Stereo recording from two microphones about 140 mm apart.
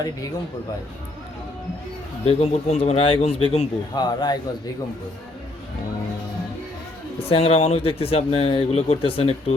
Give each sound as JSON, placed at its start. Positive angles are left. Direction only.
{"t": 2.2, "sound": "speech", "side_deg": 50}
{"t": 3.9, "sound": "speech", "side_deg": 30}
{"t": 7.2, "sound": "speech", "side_deg": 45}